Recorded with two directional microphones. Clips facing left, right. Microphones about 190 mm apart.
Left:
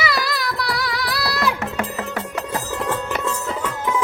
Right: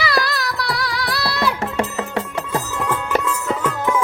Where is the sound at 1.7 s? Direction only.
30° right (ahead or behind).